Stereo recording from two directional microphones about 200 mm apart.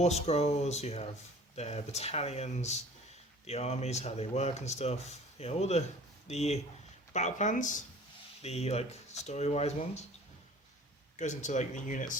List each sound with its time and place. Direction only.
0.0 s speech: 30° left (ahead or behind)
11.2 s speech: 35° left (ahead or behind)